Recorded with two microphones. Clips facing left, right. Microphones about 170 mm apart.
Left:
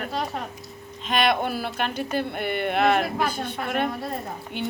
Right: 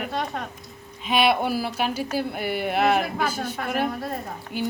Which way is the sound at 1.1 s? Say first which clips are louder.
Right 2 dB; 5° right (ahead or behind).